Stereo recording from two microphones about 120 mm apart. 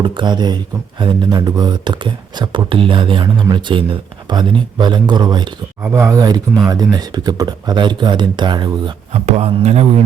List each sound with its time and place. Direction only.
0.0 s speech: 40° right (ahead or behind)
5.8 s speech: 25° right (ahead or behind); by 8.8 s 40° right (ahead or behind)
9.1 s speech: 55° right (ahead or behind)